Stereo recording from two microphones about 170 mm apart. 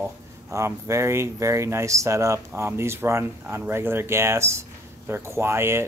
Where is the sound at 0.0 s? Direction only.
15° right (ahead or behind).